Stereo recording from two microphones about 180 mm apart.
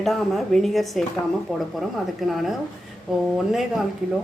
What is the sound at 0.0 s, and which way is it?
Speech, centre (ahead or behind).